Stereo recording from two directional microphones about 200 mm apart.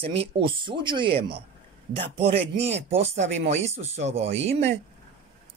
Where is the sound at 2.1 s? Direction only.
55° right (ahead or behind).